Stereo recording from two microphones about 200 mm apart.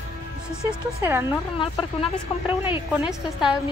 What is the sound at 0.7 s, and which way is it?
Speech, 10° right (ahead or behind).